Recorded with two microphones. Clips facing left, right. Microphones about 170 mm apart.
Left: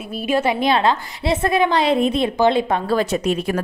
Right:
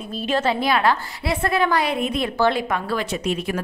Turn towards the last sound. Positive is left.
turn(degrees=40)  # may be behind; listen again after turning